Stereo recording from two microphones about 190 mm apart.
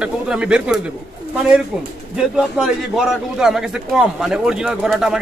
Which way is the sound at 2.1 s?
5° right (ahead or behind).